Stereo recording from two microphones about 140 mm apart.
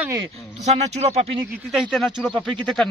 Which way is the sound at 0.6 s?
50° right (ahead or behind).